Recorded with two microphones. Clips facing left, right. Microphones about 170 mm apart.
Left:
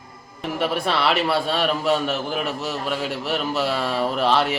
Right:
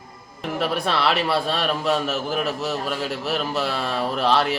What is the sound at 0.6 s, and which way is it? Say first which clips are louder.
A man's voice: left 1 dB; centre (ahead or behind).